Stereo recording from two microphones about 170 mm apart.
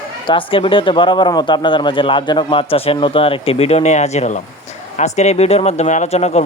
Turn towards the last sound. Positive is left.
turn(degrees=40)  # may be behind; listen again after turning